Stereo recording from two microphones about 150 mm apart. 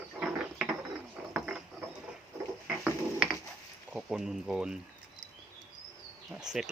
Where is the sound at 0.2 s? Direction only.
10° right (ahead or behind).